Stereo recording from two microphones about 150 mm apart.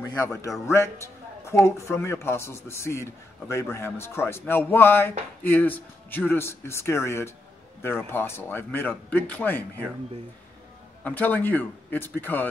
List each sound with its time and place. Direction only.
0.3 s a man's voice: 20° left (ahead or behind)
11.1 s a man's voice: 10° left (ahead or behind)